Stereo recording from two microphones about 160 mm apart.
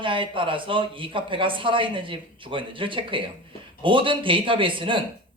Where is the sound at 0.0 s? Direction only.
30° right (ahead or behind).